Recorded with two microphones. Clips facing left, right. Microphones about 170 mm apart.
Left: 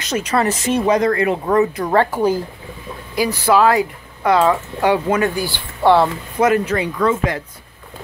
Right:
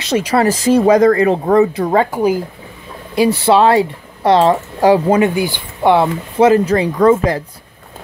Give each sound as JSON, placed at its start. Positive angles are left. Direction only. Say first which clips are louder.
{"t": 0.1, "sound": "speech", "louder": "right 5 dB", "side_deg": -30}
{"t": 2.0, "sound": "speech", "louder": "right 1 dB", "side_deg": -15}
{"t": 3.2, "sound": "speech", "louder": "right 4 dB", "side_deg": -25}
{"t": 5.2, "sound": "speech", "louder": "right 5 dB", "side_deg": -20}